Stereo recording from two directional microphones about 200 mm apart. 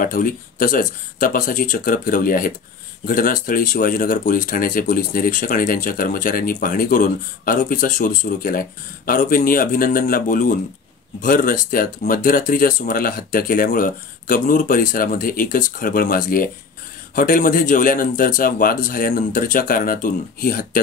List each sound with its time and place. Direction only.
0.0 s speech: 45° left (ahead or behind)